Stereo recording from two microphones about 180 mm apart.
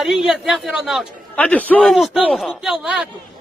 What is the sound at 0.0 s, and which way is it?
A man's voice, centre (ahead or behind).